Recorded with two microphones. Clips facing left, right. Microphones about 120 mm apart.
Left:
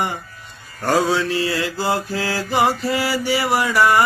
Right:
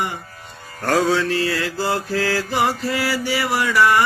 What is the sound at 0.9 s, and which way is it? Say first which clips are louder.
Mantra: even; 5° left (ahead or behind).